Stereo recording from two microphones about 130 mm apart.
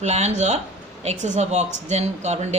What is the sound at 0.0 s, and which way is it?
Speech, 60° right (ahead or behind).